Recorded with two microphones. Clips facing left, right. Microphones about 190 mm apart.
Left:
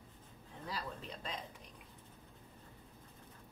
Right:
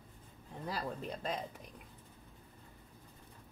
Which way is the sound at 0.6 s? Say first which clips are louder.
Right 5 dB; 45° right (ahead or behind).